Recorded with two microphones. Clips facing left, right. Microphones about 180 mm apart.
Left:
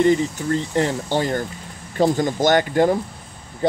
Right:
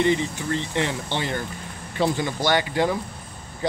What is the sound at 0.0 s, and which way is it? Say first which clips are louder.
Speech: left 5 dB; 45° left (ahead or behind).